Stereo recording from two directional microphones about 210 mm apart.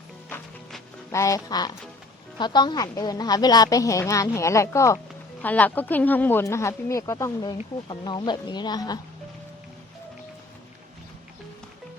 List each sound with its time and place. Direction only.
0.3 s music: 10° left (ahead or behind)
2.4 s a woman's voice: 20° left (ahead or behind)